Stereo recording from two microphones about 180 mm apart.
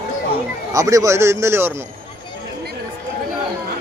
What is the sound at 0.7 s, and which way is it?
A man's voice, 20° right (ahead or behind).